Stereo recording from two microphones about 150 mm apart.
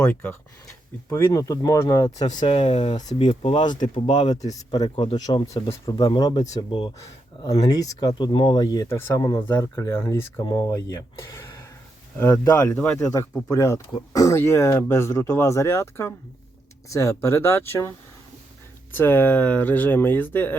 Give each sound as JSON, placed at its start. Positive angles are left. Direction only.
{"t": 0.0, "sound": "speech", "side_deg": 10}
{"t": 1.1, "sound": "speech", "side_deg": 20}
{"t": 2.1, "sound": "speech", "side_deg": 55}
{"t": 2.5, "sound": "speech", "side_deg": 40}
{"t": 7.9, "sound": "speech", "side_deg": 30}
{"t": 10.4, "sound": "speech", "side_deg": 30}
{"t": 12.7, "sound": "speech", "side_deg": 5}
{"t": 13.5, "sound": "speech", "side_deg": 20}